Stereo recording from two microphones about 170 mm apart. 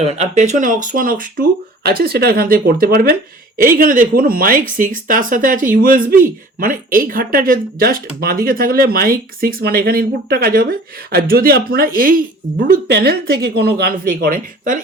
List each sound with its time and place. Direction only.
0.0 s speech: 40° right (ahead or behind)